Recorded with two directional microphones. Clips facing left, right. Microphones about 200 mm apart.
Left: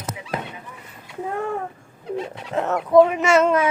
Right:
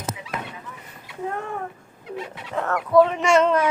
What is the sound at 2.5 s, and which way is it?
Speech, 20° left (ahead or behind).